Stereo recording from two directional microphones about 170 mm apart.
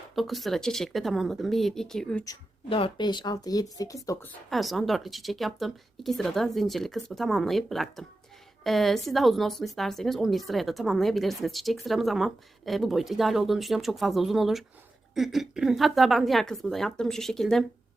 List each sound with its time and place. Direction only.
0.2 s a woman's voice: centre (ahead or behind)
2.6 s speech: 30° left (ahead or behind)
4.4 s a woman's voice: centre (ahead or behind)